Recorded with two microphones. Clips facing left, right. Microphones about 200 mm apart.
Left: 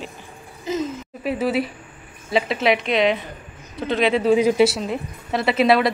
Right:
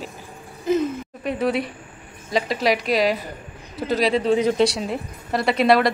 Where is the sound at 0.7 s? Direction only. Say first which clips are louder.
Right 4 dB; 55° right (ahead or behind).